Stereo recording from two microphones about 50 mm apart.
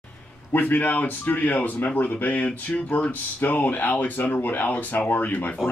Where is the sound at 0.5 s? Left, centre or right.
Left.